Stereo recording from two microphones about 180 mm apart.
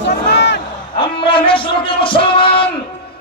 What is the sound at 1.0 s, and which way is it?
Music, 30° left (ahead or behind).